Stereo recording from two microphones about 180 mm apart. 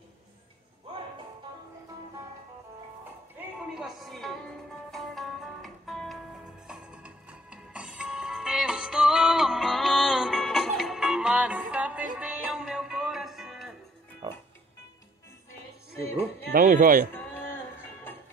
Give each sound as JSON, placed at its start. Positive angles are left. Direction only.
{"t": 3.7, "sound": "music", "side_deg": 0}
{"t": 14.2, "sound": "music", "side_deg": -25}
{"t": 16.5, "sound": "speech", "side_deg": -50}
{"t": 17.1, "sound": "a sound", "side_deg": 10}